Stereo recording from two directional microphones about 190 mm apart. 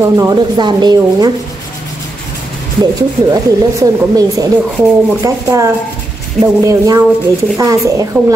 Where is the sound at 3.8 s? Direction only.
20° right (ahead or behind).